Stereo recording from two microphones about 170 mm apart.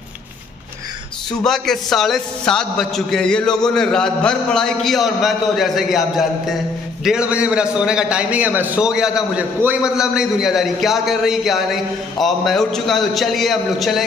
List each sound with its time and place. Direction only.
1.4 s a man's voice: centre (ahead or behind)